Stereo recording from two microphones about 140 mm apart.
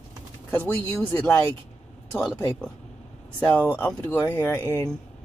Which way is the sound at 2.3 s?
15° left (ahead or behind).